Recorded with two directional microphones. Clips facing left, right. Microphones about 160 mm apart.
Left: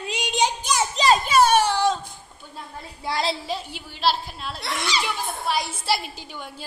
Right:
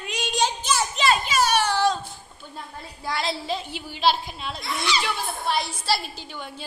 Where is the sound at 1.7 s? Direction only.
20° left (ahead or behind).